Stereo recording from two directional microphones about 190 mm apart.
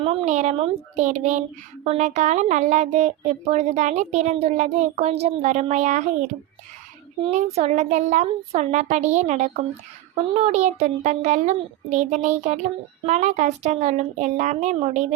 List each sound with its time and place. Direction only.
0.0 s a child's voice: 30° right (ahead or behind)